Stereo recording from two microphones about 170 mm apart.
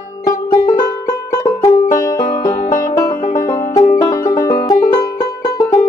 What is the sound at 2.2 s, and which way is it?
Music, 55° left (ahead or behind).